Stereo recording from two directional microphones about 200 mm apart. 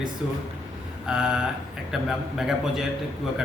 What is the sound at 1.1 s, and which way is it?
Speech, 5° right (ahead or behind).